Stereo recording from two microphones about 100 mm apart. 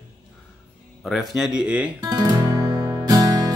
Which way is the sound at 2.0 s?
40° right (ahead or behind).